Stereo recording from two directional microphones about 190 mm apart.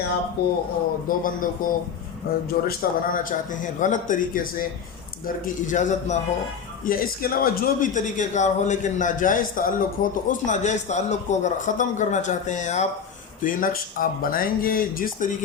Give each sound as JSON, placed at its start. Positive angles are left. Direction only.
{"t": 0.4, "sound": "a man's voice", "side_deg": 55}